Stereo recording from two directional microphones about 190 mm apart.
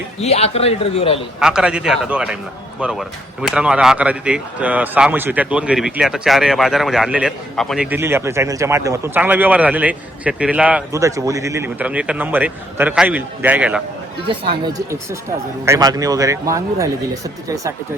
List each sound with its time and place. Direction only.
0.2 s a man's voice: 35° left (ahead or behind)
1.4 s speech: 5° right (ahead or behind)
7.9 s speech: 10° right (ahead or behind)
10.9 s speech: 15° right (ahead or behind)
14.3 s speech: 25° right (ahead or behind)